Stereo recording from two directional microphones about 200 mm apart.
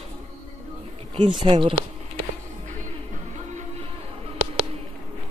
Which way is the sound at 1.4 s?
25° right (ahead or behind).